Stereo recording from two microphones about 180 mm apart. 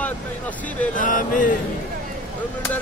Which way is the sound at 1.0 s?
45° left (ahead or behind).